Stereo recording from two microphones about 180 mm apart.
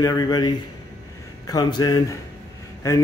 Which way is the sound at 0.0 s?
20° left (ahead or behind).